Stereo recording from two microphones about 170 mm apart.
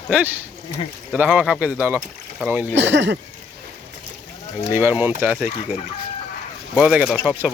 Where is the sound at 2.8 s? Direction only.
90° right.